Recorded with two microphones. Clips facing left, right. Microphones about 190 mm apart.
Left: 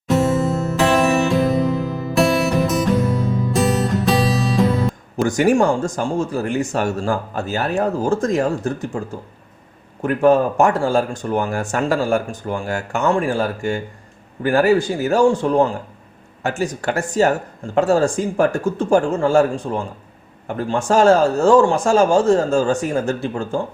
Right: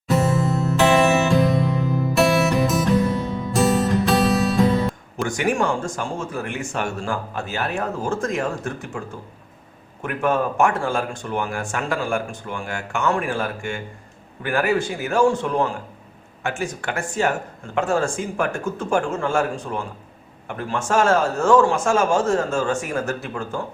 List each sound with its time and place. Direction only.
0.1 s music: centre (ahead or behind)
5.1 s speech: 40° left (ahead or behind)
10.0 s speech: 35° left (ahead or behind)